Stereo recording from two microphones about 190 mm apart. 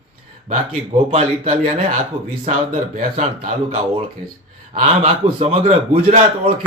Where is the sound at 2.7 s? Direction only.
45° right (ahead or behind).